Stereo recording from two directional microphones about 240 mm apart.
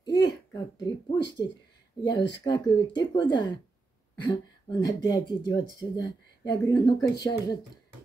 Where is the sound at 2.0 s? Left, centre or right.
Centre.